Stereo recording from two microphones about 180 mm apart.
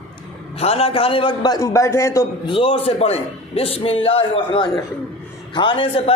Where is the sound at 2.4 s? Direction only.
30° left (ahead or behind).